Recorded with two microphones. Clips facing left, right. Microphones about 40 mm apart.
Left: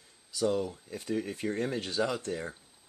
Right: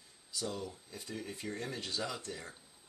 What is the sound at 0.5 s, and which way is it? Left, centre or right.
Speech, centre.